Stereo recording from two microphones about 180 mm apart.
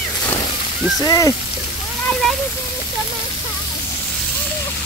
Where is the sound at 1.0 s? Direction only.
20° left (ahead or behind).